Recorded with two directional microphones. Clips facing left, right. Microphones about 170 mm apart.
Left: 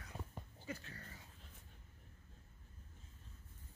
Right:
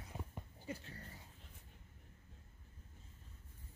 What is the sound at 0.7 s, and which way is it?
Speech, 25° right (ahead or behind).